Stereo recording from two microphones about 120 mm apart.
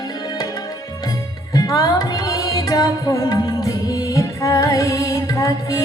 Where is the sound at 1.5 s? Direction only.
30° left (ahead or behind).